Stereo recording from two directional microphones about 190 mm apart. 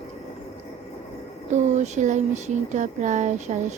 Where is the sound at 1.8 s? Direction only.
40° right (ahead or behind).